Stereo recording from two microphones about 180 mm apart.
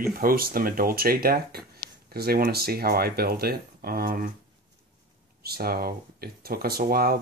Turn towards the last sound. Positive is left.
turn(degrees=-55)  # may be behind; listen again after turning